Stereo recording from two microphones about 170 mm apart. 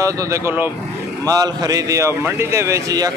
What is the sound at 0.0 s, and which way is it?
A man's voice, 15° right (ahead or behind).